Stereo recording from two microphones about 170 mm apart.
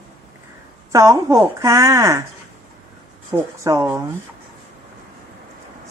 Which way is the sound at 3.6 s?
15° right (ahead or behind).